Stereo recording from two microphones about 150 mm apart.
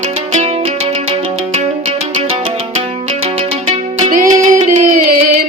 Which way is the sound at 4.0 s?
60° right (ahead or behind).